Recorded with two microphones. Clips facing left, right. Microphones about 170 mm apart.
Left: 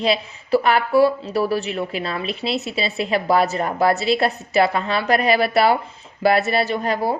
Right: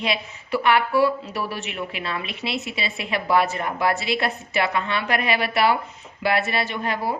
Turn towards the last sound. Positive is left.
turn(degrees=35)  # may be behind; listen again after turning